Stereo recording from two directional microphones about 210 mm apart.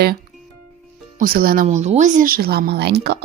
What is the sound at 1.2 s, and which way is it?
Speech, 45° right (ahead or behind).